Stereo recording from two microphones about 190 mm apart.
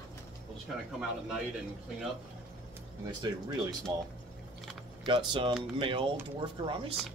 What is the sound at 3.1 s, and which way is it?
Speech, 25° right (ahead or behind).